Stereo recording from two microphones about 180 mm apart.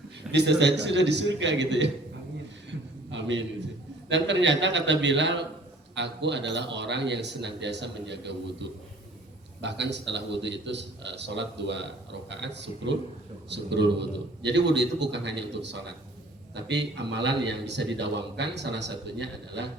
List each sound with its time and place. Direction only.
0.3 s a man's voice: 70° right (ahead or behind)
3.1 s a sound: 90° right
4.1 s a man's voice: 85° right
9.6 s a man's voice: 75° right (ahead or behind)